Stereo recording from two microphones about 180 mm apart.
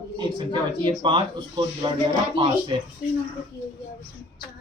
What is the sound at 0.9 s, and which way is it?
Speech, 25° right (ahead or behind).